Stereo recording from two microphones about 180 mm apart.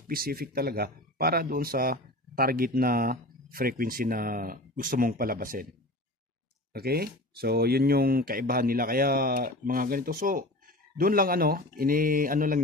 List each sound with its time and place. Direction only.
0.1 s speech: 55° right (ahead or behind)
6.7 s speech: 60° right (ahead or behind)